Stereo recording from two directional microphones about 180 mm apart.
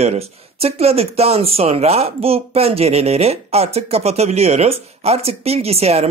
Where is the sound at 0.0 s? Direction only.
35° right (ahead or behind).